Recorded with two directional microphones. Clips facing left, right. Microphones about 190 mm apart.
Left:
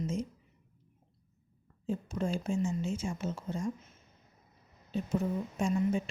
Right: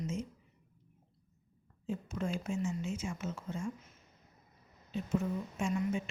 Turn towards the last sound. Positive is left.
turn(degrees=35)  # may be behind; listen again after turning